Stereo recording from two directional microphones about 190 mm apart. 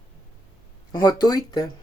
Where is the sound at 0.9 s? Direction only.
20° left (ahead or behind).